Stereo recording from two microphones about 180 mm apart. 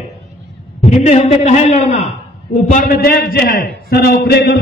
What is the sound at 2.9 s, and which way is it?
A man's voice, 55° left (ahead or behind).